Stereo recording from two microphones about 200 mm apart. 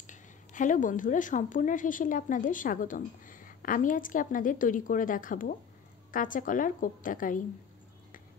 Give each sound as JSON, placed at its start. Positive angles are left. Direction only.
{"t": 0.0, "sound": "a woman's voice", "side_deg": 40}